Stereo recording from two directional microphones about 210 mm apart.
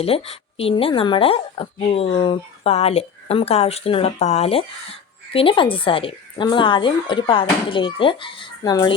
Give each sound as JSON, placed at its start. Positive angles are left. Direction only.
{"t": 0.0, "sound": "speech", "side_deg": 30}